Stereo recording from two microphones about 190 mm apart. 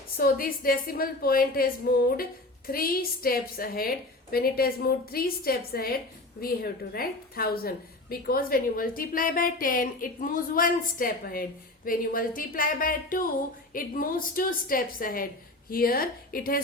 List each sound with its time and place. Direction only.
0.2 s a woman's voice: 50° left (ahead or behind)